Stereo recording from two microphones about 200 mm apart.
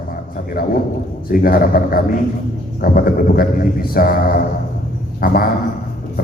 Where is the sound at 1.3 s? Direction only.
45° left (ahead or behind).